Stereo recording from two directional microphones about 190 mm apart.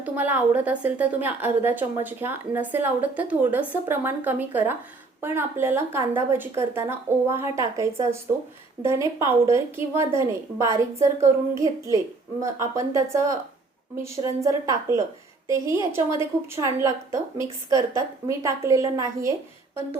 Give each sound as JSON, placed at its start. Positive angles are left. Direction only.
{"t": 0.0, "sound": "a woman's voice", "side_deg": -10}